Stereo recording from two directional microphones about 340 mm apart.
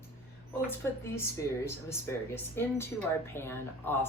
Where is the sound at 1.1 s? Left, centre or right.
Centre.